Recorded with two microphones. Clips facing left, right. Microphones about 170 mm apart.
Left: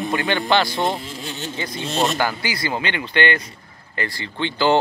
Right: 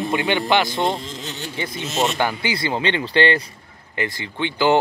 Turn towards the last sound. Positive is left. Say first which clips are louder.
# even
turn(degrees=-15)  # may be behind; listen again after turning